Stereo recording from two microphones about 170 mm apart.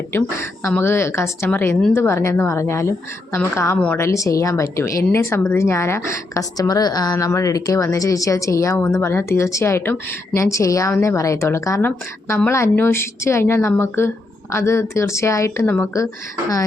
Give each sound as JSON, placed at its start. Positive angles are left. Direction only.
{"t": 0.1, "sound": "a woman's voice", "side_deg": 15}